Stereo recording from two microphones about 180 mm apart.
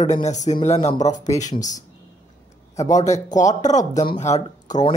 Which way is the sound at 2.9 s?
40° left (ahead or behind).